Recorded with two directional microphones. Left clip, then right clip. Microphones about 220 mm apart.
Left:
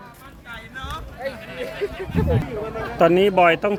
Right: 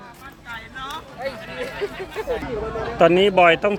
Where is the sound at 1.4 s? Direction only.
45° left (ahead or behind).